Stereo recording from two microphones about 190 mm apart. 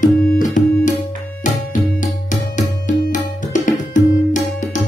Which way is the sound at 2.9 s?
40° left (ahead or behind).